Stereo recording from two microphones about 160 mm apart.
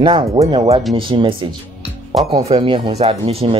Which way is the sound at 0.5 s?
35° right (ahead or behind).